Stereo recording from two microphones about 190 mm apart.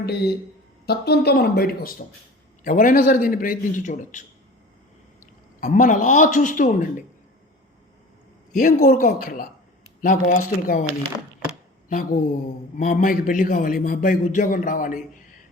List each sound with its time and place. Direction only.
0.0 s a man's voice: 60° left (ahead or behind); by 4.2 s 40° left (ahead or behind)
5.2 s a man's voice: 45° left (ahead or behind)
8.5 s a man's voice: 50° left (ahead or behind)
11.9 s a man's voice: 50° left (ahead or behind)